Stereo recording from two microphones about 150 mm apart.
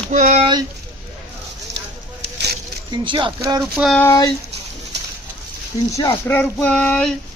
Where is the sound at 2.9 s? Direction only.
30° right (ahead or behind).